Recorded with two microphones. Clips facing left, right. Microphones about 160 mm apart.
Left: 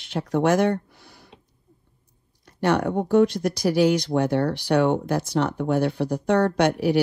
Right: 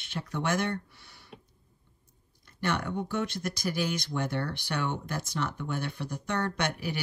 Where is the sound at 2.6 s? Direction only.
60° left (ahead or behind).